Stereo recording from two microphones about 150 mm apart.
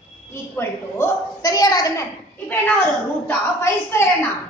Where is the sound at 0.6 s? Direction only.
20° left (ahead or behind).